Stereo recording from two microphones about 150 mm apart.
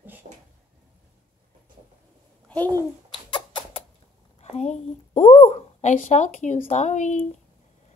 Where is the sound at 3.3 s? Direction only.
30° left (ahead or behind).